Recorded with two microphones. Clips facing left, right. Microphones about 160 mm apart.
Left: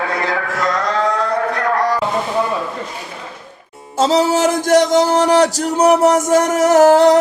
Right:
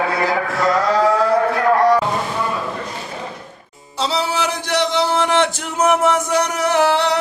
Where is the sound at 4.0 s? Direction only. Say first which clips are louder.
Left 7 dB; 45° left (ahead or behind).